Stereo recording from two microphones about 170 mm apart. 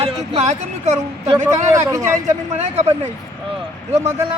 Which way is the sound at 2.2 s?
40° right (ahead or behind).